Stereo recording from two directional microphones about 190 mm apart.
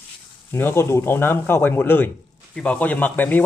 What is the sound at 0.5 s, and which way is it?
Speech, 10° left (ahead or behind).